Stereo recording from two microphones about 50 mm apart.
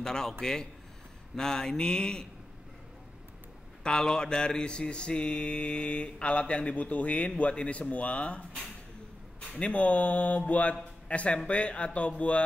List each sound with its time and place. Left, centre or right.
0.0 s speech: centre
3.8 s mantra: centre